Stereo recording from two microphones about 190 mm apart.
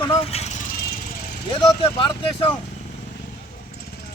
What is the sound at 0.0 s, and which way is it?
Vehicle, 30° left (ahead or behind).